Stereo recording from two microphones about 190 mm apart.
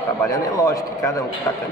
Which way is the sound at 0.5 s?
20° left (ahead or behind).